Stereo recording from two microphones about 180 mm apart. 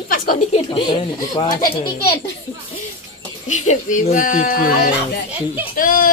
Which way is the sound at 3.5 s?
40° left (ahead or behind).